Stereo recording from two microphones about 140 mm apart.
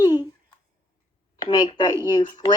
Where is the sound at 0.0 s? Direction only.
30° left (ahead or behind).